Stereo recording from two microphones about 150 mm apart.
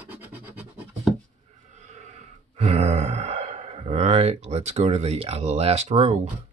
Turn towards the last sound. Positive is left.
turn(degrees=-45)  # may be behind; listen again after turning